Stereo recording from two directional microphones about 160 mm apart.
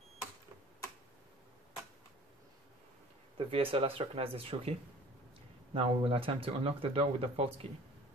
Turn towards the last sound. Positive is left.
turn(degrees=-40)  # may be behind; listen again after turning